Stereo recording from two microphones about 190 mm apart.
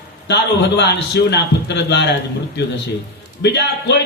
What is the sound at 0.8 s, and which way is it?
A man's voice, 65° left (ahead or behind).